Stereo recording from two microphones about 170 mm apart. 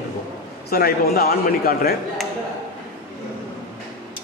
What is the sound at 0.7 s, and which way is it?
A man's voice, 65° left (ahead or behind).